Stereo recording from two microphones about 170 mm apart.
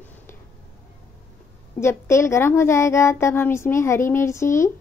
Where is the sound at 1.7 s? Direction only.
15° left (ahead or behind).